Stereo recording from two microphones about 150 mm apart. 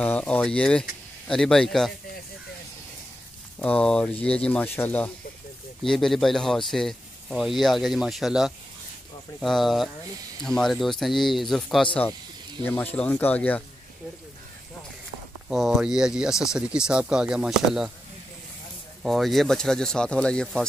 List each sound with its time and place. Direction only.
0.0 s speech: 10° left (ahead or behind)
3.5 s speech: 10° left (ahead or behind)
5.9 s speech: centre (ahead or behind)
15.5 s speech: centre (ahead or behind)
19.0 s speech: centre (ahead or behind)